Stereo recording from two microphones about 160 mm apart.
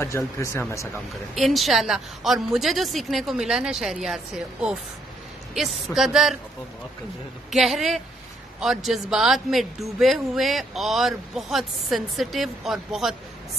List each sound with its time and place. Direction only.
0.0 s speech: 15° left (ahead or behind)
1.3 s a man's voice: centre (ahead or behind)
7.5 s a man's voice: centre (ahead or behind)